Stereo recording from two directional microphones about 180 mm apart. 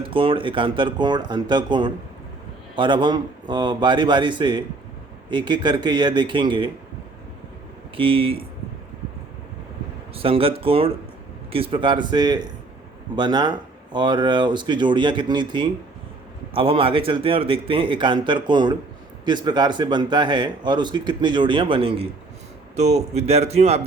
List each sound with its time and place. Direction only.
0.1 s a man's voice: 30° right (ahead or behind)
7.9 s a man's voice: 30° right (ahead or behind)
10.2 s a man's voice: 30° right (ahead or behind)